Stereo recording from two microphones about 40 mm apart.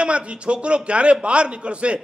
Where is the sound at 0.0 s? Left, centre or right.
Right.